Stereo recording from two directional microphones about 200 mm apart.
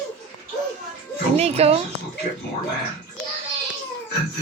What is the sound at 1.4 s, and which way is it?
Speech, 30° right (ahead or behind).